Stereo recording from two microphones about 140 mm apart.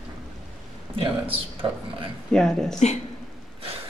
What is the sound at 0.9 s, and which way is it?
Speech, 40° right (ahead or behind).